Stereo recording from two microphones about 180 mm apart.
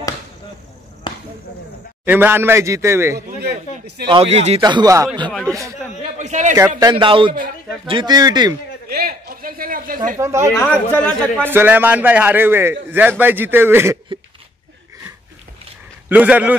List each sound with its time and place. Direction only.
1.1 s a sound: 30° left (ahead or behind)
2.0 s a man's voice: 10° right (ahead or behind)
4.1 s speech: 35° right (ahead or behind)
4.6 s speech: 25° right (ahead or behind)
6.0 s a sound: 40° right (ahead or behind)
6.8 s speech: 25° right (ahead or behind)
8.8 s a sound: 60° right (ahead or behind)
10.1 s a man's voice: 15° right (ahead or behind)
10.5 s speech: 10° left (ahead or behind)
11.4 s a man's voice: 10° right (ahead or behind)
16.1 s a man's voice: 10° right (ahead or behind)